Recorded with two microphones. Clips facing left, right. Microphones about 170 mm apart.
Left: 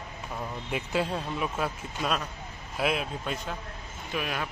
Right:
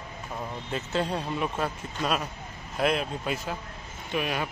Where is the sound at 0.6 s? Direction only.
10° left (ahead or behind).